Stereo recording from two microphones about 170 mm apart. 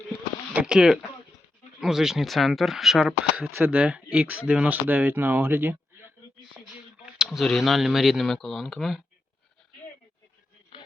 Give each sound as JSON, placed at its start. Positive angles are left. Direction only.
{"t": 0.5, "sound": "speech", "side_deg": -5}
{"t": 7.0, "sound": "speech", "side_deg": 0}